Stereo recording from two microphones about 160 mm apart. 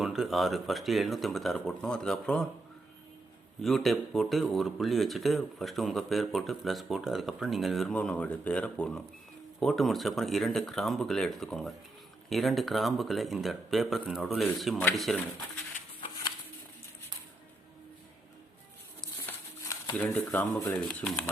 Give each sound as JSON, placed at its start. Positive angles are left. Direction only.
{"t": 0.0, "sound": "speech", "side_deg": 0}
{"t": 3.6, "sound": "speech", "side_deg": 0}
{"t": 19.2, "sound": "a sound", "side_deg": 10}
{"t": 20.4, "sound": "speech", "side_deg": 20}
{"t": 20.7, "sound": "speech", "side_deg": 5}